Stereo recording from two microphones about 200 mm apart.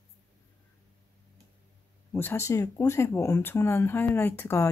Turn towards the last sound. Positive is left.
turn(degrees=10)  # may be behind; listen again after turning